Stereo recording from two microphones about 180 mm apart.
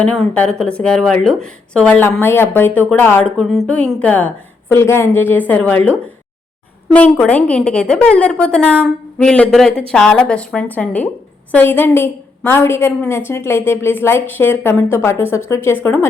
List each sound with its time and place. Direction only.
0.0 s a woman's voice: 5° left (ahead or behind)